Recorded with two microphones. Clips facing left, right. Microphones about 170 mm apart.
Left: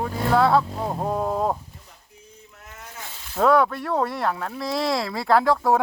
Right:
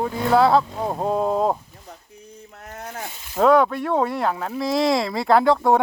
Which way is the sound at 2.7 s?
65° right (ahead or behind).